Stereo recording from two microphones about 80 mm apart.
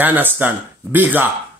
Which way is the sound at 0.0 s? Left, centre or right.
Right.